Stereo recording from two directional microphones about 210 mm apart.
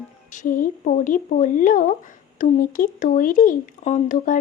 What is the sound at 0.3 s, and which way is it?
Speech, 40° left (ahead or behind).